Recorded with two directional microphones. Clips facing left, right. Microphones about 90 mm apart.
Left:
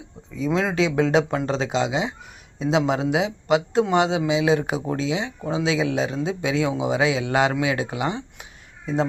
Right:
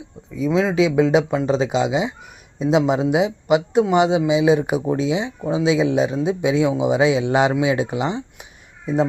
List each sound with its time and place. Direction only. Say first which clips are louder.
0.3 s speech: right 4 dB; 5° right (ahead or behind); by 8.2 s 20° right (ahead or behind)